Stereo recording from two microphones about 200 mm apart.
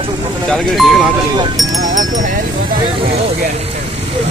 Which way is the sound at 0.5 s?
Centre (ahead or behind).